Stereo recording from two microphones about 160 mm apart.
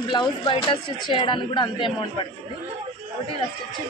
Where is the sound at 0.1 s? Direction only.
30° left (ahead or behind).